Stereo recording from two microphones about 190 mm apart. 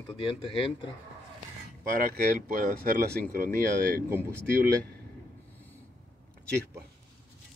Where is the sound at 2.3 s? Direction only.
40° right (ahead or behind).